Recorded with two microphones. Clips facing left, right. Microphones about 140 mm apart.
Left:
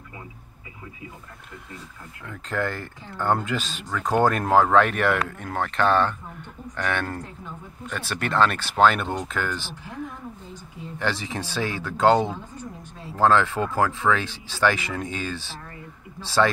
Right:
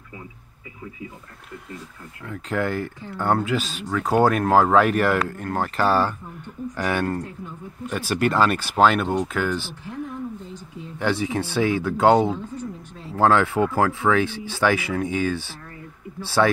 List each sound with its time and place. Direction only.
2.2 s speech: 10° right (ahead or behind)
11.0 s speech: 10° right (ahead or behind)